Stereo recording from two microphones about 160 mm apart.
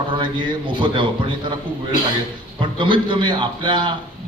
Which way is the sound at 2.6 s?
30° right (ahead or behind).